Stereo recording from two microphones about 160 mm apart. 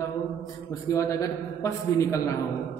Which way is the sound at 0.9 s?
20° left (ahead or behind).